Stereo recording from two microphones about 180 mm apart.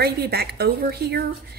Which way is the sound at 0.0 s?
60° right (ahead or behind).